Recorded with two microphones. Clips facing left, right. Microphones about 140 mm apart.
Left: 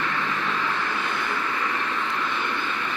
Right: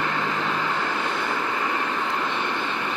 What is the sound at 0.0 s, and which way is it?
Vehicle, 35° right (ahead or behind).